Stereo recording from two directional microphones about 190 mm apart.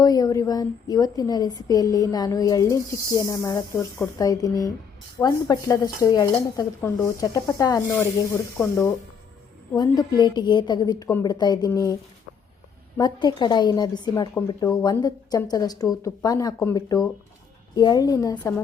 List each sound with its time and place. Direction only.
0.0 s a woman's voice: 20° left (ahead or behind)
13.0 s a woman's voice: 25° left (ahead or behind)
17.7 s a woman's voice: 20° left (ahead or behind)